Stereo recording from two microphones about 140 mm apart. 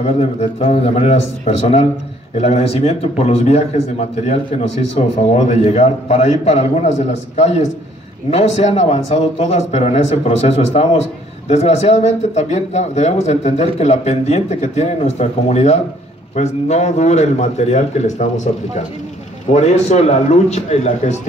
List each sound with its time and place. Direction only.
0.0 s speech: 50° left (ahead or behind)
2.3 s speech: 50° left (ahead or behind)